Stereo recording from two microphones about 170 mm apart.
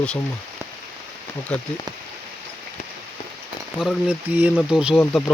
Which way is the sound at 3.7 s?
5° right (ahead or behind).